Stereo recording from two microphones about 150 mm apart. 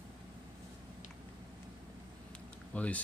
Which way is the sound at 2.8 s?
10° left (ahead or behind).